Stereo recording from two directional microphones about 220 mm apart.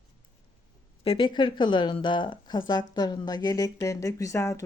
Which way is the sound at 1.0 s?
20° left (ahead or behind).